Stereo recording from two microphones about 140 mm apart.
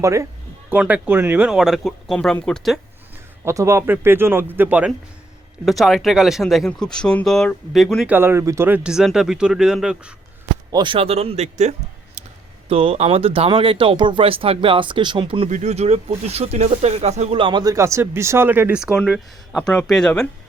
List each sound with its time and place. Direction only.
0.0 s speech: 20° right (ahead or behind)
0.7 s speech: 10° right (ahead or behind)
3.4 s speech: 20° right (ahead or behind)
5.6 s speech: centre (ahead or behind)
8.1 s speech: 15° right (ahead or behind)
10.7 s speech: 35° right (ahead or behind)
15.4 s speech: 60° right (ahead or behind)
17.4 s speech: 30° right (ahead or behind); by 20.2 s 5° left (ahead or behind)